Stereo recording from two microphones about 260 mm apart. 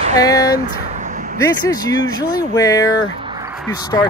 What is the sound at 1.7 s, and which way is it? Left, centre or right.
Speech, centre.